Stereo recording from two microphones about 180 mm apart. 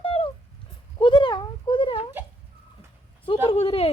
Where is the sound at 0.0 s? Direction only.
30° left (ahead or behind).